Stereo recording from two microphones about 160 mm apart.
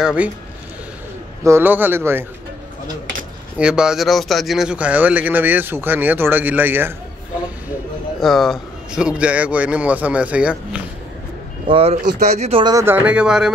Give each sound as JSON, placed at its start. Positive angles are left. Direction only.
{"t": 0.0, "sound": "a man's voice", "side_deg": -5}
{"t": 1.4, "sound": "a man's voice", "side_deg": -15}
{"t": 3.5, "sound": "a man's voice", "side_deg": -5}
{"t": 8.2, "sound": "a man's voice", "side_deg": 0}
{"t": 11.6, "sound": "speech", "side_deg": -35}
{"t": 12.7, "sound": "a man's voice", "side_deg": -15}